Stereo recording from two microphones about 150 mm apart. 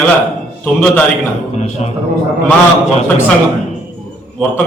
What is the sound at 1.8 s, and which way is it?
Speech, 45° left (ahead or behind).